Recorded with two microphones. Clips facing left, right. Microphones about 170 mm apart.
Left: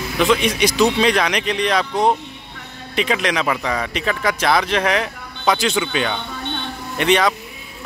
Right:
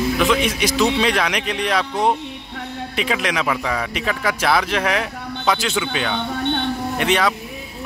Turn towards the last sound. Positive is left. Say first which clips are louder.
# left 2 dB
turn(degrees=-5)  # may be behind; listen again after turning